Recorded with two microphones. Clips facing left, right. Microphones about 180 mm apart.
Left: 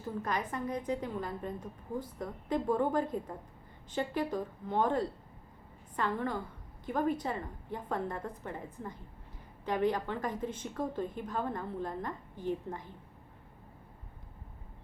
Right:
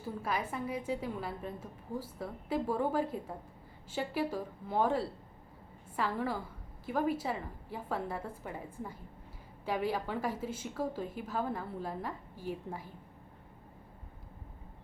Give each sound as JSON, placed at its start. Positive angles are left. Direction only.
{"t": 0.0, "sound": "a woman's voice", "side_deg": -5}